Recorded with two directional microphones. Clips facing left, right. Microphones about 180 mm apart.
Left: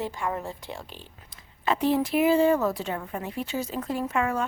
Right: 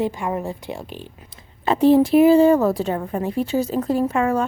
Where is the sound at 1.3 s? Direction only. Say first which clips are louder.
Right 5 dB; 30° right (ahead or behind).